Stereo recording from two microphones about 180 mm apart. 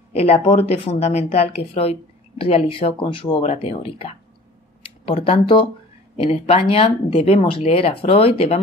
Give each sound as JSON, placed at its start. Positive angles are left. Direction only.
{"t": 0.1, "sound": "a woman's voice", "side_deg": 35}